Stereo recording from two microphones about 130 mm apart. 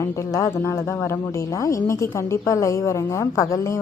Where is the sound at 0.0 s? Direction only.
25° left (ahead or behind).